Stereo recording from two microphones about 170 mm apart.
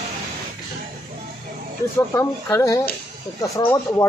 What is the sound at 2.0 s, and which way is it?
Speech, 15° left (ahead or behind).